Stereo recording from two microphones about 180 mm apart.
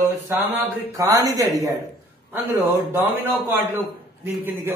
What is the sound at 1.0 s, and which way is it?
A woman's voice, 20° right (ahead or behind).